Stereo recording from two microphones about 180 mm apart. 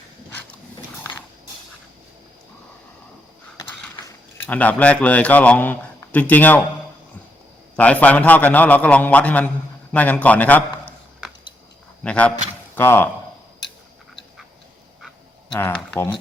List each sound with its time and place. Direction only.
1.1 s dog: 25° left (ahead or behind)
4.4 s speech: 10° left (ahead or behind)
7.8 s a man's voice: 10° left (ahead or behind)
12.0 s speech: 5° left (ahead or behind)
15.5 s speech: 10° left (ahead or behind)